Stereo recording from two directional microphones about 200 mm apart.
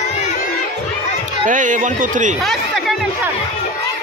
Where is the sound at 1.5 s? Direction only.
40° right (ahead or behind).